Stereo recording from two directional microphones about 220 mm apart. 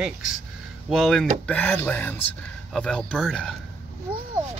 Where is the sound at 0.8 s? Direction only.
Centre (ahead or behind).